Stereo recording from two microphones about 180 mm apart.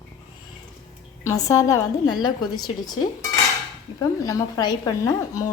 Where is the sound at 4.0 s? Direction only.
20° left (ahead or behind).